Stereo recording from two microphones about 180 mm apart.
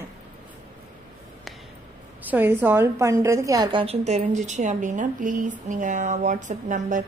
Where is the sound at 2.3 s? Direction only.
10° right (ahead or behind).